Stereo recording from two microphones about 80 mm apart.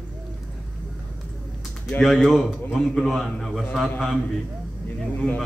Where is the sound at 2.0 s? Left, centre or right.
Centre.